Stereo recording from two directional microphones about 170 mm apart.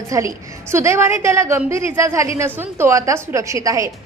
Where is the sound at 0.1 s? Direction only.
20° right (ahead or behind).